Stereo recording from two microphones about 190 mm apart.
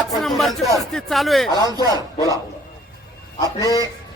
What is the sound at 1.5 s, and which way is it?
Speech, 20° left (ahead or behind).